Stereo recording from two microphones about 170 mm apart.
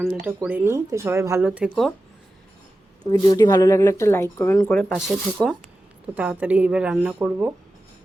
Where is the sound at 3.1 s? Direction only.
20° left (ahead or behind); by 7.5 s 5° right (ahead or behind).